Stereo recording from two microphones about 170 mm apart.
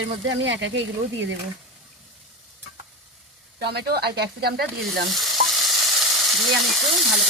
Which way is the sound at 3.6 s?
75° right (ahead or behind).